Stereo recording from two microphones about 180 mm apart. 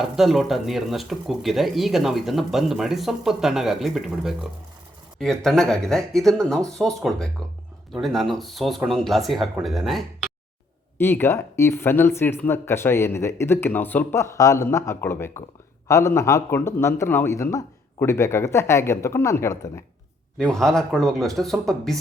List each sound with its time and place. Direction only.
0.0 s speech: centre (ahead or behind)
10.9 s speech: 10° left (ahead or behind)
20.4 s speech: 5° left (ahead or behind)